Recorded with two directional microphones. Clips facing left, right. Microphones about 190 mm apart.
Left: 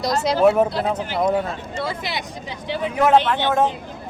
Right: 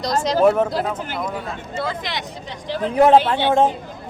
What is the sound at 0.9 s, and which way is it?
Speech, 50° right (ahead or behind).